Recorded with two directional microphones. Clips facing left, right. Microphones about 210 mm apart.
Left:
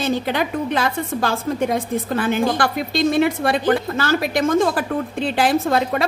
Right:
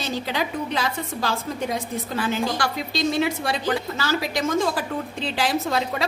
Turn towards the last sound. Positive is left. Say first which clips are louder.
# left 6 dB
turn(degrees=55)  # may be behind; listen again after turning